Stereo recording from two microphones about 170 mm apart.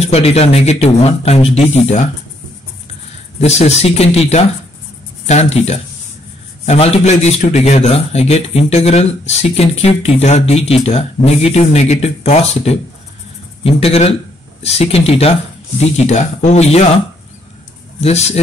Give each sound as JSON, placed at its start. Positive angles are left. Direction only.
{"t": 0.0, "sound": "a man's voice", "side_deg": 40}
{"t": 3.3, "sound": "a man's voice", "side_deg": 40}
{"t": 18.0, "sound": "a man's voice", "side_deg": 40}